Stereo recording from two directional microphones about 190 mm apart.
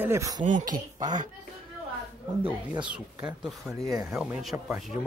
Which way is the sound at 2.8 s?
5° right (ahead or behind).